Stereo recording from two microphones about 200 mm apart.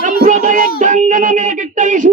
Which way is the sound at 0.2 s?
40° right (ahead or behind).